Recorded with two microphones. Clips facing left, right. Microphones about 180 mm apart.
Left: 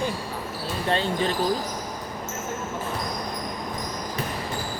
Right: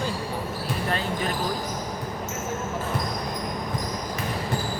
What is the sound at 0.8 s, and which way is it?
Speech, 30° left (ahead or behind).